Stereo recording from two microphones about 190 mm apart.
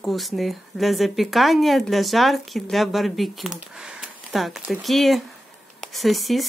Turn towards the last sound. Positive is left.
turn(degrees=0)  # may be behind; listen again after turning